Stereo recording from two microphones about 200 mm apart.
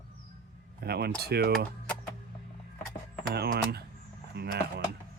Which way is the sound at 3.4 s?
55° right (ahead or behind).